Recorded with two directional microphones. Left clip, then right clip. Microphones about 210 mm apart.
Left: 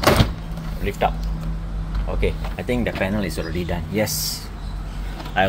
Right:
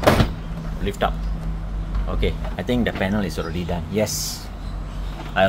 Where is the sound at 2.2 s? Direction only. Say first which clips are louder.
Left 1 dB; 15° right (ahead or behind).